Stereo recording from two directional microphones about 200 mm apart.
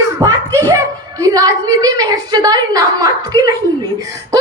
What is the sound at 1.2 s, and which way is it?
A woman's voice, 15° right (ahead or behind).